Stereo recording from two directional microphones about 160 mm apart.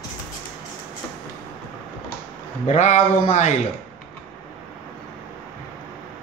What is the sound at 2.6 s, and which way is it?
Speech, 50° left (ahead or behind).